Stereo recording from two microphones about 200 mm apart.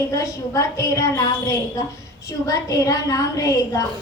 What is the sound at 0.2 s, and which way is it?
A woman's voice, 15° left (ahead or behind).